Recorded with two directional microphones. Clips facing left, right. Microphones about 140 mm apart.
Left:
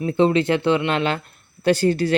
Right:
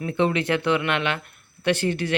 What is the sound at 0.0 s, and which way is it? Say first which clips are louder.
Speech: left 5 dB; 30° left (ahead or behind).